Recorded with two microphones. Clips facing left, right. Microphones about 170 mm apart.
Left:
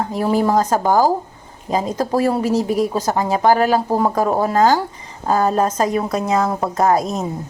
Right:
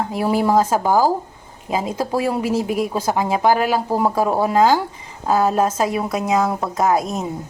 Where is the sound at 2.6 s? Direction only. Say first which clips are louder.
Left 3 dB; 40° left (ahead or behind).